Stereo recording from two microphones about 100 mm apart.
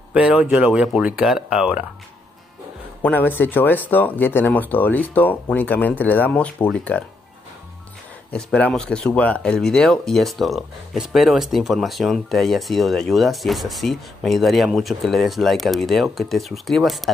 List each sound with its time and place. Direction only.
0.1 s speech: 10° right (ahead or behind)
3.0 s speech: 20° left (ahead or behind)
8.3 s speech: 10° left (ahead or behind)